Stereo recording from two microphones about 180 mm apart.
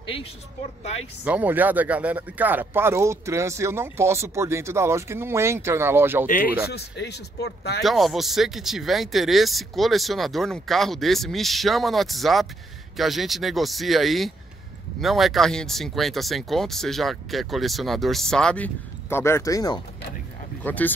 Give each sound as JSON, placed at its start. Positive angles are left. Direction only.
{"t": 0.0, "sound": "speech", "side_deg": 30}
{"t": 1.2, "sound": "speech", "side_deg": -10}
{"t": 6.2, "sound": "speech", "side_deg": 50}
{"t": 6.7, "sound": "speech", "side_deg": 65}
{"t": 7.8, "sound": "speech", "side_deg": 0}
{"t": 20.6, "sound": "speech", "side_deg": 10}